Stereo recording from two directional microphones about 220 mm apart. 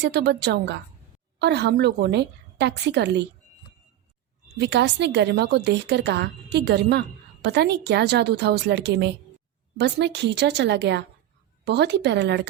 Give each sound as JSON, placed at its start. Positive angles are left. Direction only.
{"t": 0.0, "sound": "a woman's voice", "side_deg": -50}
{"t": 4.6, "sound": "a woman's voice", "side_deg": -50}